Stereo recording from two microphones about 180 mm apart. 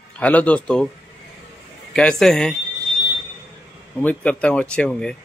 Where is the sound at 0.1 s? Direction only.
10° left (ahead or behind).